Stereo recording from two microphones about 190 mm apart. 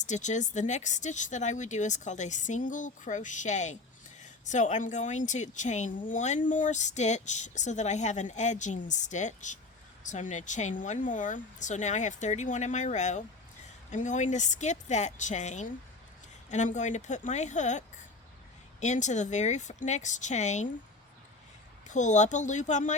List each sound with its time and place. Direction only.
0.0 s speech: 40° left (ahead or behind)
21.8 s speech: 40° left (ahead or behind)